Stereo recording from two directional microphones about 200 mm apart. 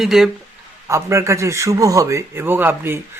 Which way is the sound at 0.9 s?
15° right (ahead or behind).